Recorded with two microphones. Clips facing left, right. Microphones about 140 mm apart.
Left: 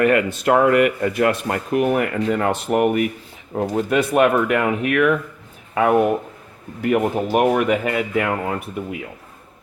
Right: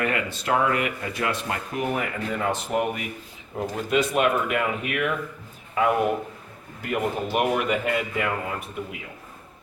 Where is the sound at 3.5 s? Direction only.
50° left (ahead or behind).